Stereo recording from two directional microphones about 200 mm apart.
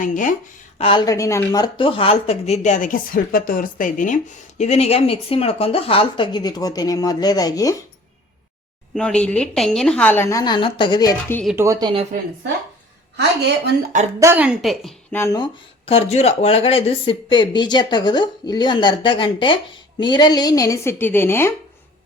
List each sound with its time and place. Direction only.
0.0 s speech: 40° left (ahead or behind)
0.8 s a woman's voice: 25° left (ahead or behind)
9.0 s a woman's voice: 5° left (ahead or behind); by 11.1 s 20° left (ahead or behind)
11.5 s speech: 15° right (ahead or behind)
14.2 s a woman's voice: 10° right (ahead or behind)
15.2 s a woman's voice: 15° left (ahead or behind)
15.9 s a woman's voice: 30° left (ahead or behind); by 21.5 s 10° left (ahead or behind)